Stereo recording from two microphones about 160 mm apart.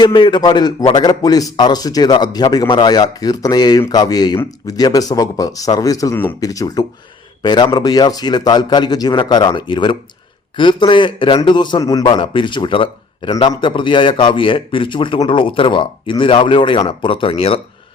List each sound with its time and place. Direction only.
0.0 s speech: 25° left (ahead or behind)
12.0 s a man's voice: 30° left (ahead or behind)